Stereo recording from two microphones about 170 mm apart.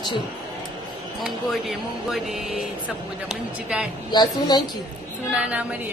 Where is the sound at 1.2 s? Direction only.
Centre (ahead or behind).